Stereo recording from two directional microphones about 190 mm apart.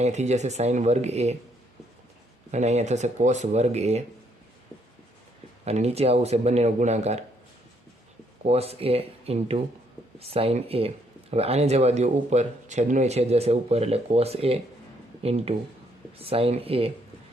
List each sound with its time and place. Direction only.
0.0 s speech: 35° right (ahead or behind)
2.5 s speech: 35° right (ahead or behind)
5.6 s speech: 35° right (ahead or behind)
8.4 s speech: 35° right (ahead or behind)